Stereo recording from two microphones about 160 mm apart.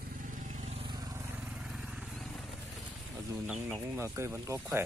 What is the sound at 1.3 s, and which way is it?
Vehicle, 5° right (ahead or behind).